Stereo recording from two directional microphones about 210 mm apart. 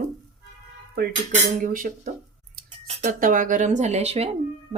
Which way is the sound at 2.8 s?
40° right (ahead or behind).